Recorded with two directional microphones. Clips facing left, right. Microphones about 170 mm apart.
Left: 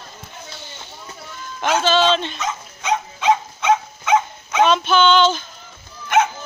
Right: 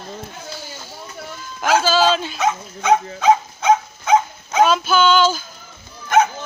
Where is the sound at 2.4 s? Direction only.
50° right (ahead or behind).